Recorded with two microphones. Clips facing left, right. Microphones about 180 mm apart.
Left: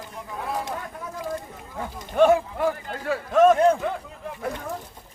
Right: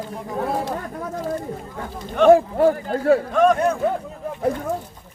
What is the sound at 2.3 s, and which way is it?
Speech, 40° right (ahead or behind).